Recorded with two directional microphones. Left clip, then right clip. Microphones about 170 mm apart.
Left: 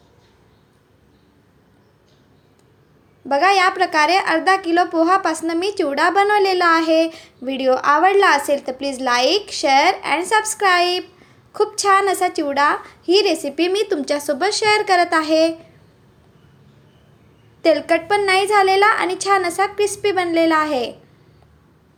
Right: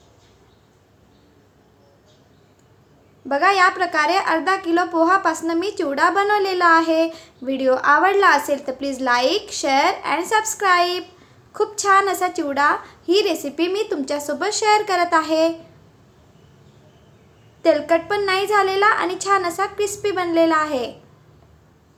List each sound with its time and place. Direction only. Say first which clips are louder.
3.2 s a child's voice: left 1 dB; 20° left (ahead or behind)
17.6 s a child's voice: left 1 dB; 20° left (ahead or behind)